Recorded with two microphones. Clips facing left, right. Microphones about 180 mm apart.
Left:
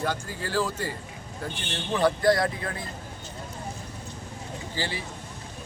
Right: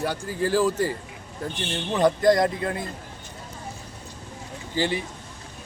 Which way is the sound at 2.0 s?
20° right (ahead or behind).